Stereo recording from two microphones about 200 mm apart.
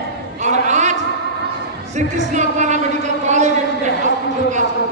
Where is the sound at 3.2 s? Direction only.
35° right (ahead or behind).